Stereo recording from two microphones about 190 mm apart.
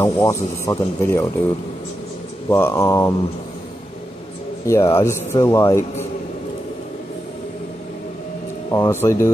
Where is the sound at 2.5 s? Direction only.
10° left (ahead or behind).